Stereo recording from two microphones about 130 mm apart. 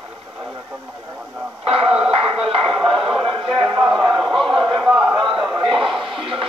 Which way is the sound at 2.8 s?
45° right (ahead or behind).